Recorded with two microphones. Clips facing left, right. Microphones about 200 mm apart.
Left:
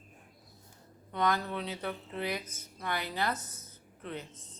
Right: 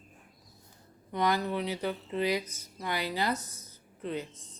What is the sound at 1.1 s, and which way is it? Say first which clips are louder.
Speech: right 2 dB; 10° right (ahead or behind).